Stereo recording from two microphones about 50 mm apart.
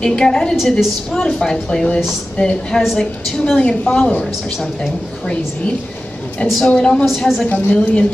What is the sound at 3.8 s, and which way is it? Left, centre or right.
A woman's voice, centre.